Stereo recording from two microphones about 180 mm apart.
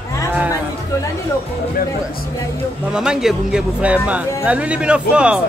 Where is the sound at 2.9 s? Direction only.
5° right (ahead or behind).